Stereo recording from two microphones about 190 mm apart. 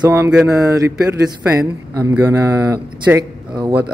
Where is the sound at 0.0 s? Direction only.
15° right (ahead or behind).